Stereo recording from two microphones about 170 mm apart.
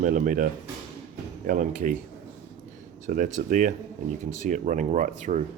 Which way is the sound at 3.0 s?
50° right (ahead or behind).